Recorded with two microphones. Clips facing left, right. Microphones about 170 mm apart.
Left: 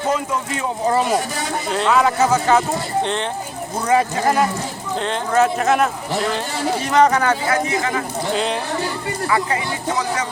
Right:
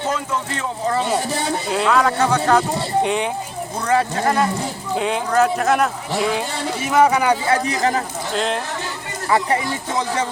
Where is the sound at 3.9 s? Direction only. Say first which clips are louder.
Left 1 dB; 10° left (ahead or behind); by 7.4 s 10° right (ahead or behind).